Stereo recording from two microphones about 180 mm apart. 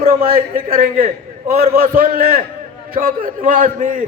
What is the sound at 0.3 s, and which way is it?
A man's voice, 50° right (ahead or behind).